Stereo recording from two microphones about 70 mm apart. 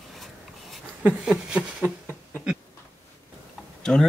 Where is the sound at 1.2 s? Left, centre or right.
Centre.